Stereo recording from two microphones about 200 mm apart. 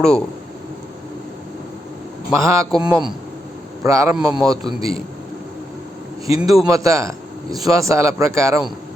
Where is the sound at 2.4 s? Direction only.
15° right (ahead or behind).